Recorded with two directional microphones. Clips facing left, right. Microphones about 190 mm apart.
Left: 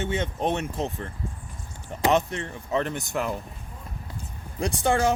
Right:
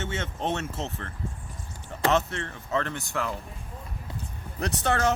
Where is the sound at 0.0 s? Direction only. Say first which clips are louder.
Left 4 dB; 15° left (ahead or behind).